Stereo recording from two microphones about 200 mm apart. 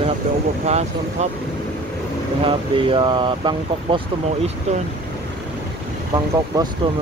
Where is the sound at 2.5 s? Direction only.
25° right (ahead or behind).